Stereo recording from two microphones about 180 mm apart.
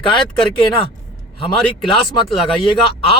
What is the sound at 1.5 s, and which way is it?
Speech, 25° left (ahead or behind).